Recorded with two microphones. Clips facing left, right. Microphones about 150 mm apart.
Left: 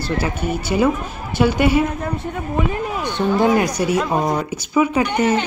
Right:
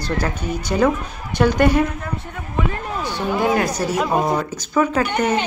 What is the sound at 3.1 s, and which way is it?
Speech, 20° left (ahead or behind).